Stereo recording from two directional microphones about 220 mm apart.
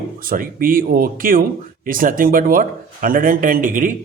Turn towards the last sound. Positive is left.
turn(degrees=-40)  # may be behind; listen again after turning